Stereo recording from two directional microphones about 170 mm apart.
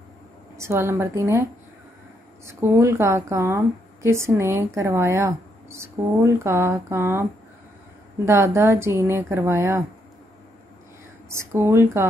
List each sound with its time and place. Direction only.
0.6 s speech: 15° right (ahead or behind)
8.3 s speech: 15° right (ahead or behind)
11.2 s speech: 15° right (ahead or behind)